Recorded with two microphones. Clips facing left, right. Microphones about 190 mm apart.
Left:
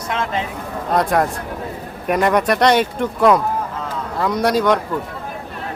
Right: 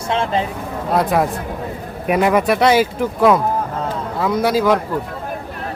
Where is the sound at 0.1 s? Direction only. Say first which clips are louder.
Right 4 dB; 30° right (ahead or behind).